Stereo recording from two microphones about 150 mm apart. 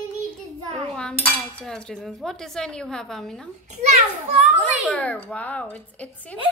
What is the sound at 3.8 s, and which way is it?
Speech, 50° right (ahead or behind).